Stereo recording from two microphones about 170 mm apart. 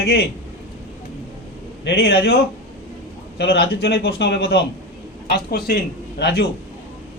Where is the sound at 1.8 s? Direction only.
80° left.